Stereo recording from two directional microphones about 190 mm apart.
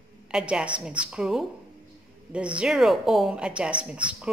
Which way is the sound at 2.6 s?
Centre (ahead or behind).